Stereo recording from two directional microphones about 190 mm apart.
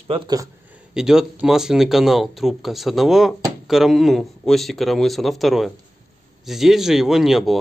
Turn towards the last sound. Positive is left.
turn(degrees=0)  # may be behind; listen again after turning